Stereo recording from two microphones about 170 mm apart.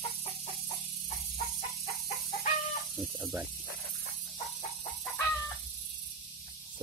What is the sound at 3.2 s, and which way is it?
Speech, 15° right (ahead or behind).